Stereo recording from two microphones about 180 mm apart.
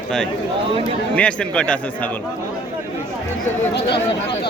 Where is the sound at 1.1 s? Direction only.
5° left (ahead or behind).